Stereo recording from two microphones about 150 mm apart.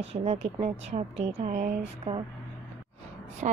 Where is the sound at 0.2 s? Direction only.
45° right (ahead or behind).